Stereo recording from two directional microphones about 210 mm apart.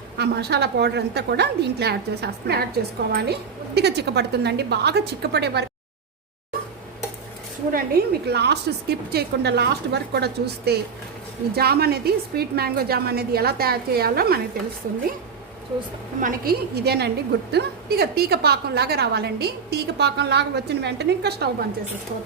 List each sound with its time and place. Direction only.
0.2 s a woman's voice: 50° right (ahead or behind)
7.7 s a woman's voice: 45° right (ahead or behind)
16.2 s a woman's voice: 40° right (ahead or behind)